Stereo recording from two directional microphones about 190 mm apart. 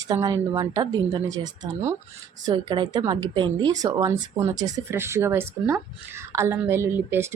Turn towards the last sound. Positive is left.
turn(degrees=-15)  # may be behind; listen again after turning